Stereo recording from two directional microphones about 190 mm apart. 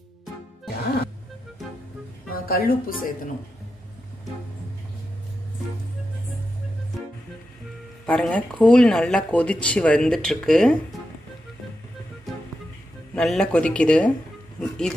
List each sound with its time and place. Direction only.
2.4 s a woman's voice: 50° left (ahead or behind)
8.1 s speech: 5° left (ahead or behind)
13.1 s speech: 5° left (ahead or behind)